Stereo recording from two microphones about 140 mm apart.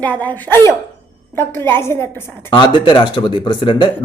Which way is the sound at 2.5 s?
35° left (ahead or behind).